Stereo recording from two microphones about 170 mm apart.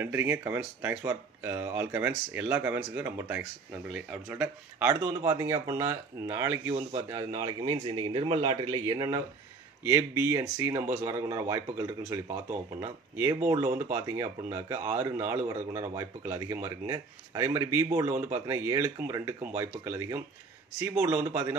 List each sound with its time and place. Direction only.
0.0 s speech: 10° right (ahead or behind)